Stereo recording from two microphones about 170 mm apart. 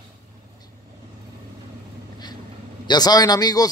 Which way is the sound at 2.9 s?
25° left (ahead or behind).